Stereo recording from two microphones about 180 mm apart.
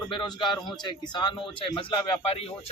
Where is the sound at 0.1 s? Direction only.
25° left (ahead or behind).